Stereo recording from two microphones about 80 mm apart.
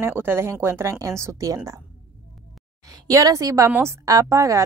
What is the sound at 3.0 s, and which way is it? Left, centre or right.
A woman's voice, right.